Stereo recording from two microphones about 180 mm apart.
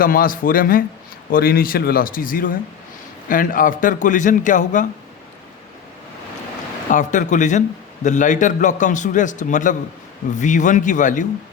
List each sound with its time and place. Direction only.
0.0 s a man's voice: 50° left (ahead or behind)
6.9 s a man's voice: 45° left (ahead or behind)